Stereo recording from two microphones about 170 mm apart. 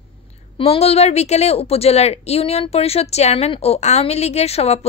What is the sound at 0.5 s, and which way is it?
A woman's voice, 35° left (ahead or behind).